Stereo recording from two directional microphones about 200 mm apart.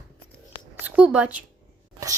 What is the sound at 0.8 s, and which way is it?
Speech, 5° right (ahead or behind).